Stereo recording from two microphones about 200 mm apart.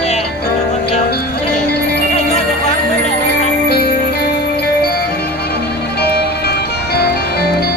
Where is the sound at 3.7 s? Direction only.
55° left (ahead or behind).